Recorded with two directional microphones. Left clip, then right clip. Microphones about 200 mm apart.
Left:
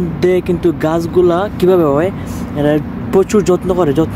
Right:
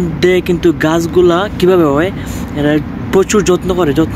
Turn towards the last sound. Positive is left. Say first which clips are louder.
# right 1 dB
turn(degrees=15)  # may be behind; listen again after turning